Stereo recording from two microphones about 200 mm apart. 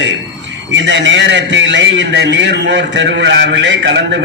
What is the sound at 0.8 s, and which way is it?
A man's voice, 65° right (ahead or behind).